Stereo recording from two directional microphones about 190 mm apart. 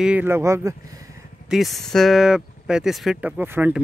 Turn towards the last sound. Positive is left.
turn(degrees=-5)  # may be behind; listen again after turning